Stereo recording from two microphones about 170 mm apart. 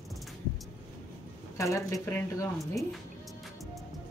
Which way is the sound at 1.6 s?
20° left (ahead or behind).